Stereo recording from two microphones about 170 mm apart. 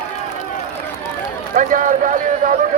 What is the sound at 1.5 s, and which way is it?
A man's voice, 50° right (ahead or behind).